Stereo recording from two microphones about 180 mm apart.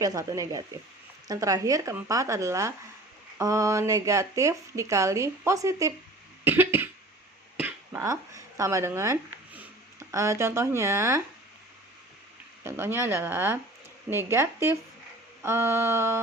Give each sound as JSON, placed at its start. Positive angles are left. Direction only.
{"t": 0.0, "sound": "speech", "side_deg": -20}
{"t": 6.4, "sound": "cough", "side_deg": -10}
{"t": 7.6, "sound": "speech", "side_deg": -15}
{"t": 12.6, "sound": "speech", "side_deg": -10}